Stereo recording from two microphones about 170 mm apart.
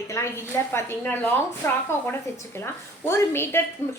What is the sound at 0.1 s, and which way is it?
A woman's voice, 15° left (ahead or behind).